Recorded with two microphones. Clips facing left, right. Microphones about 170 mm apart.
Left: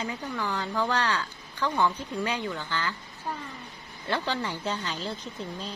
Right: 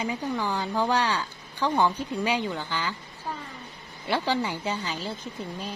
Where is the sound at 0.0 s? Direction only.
15° right (ahead or behind).